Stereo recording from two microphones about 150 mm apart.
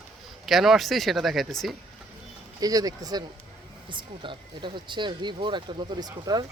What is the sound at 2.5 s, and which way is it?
Speech, 25° right (ahead or behind).